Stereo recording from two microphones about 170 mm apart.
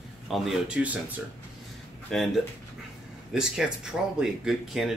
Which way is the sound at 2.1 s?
5° left (ahead or behind).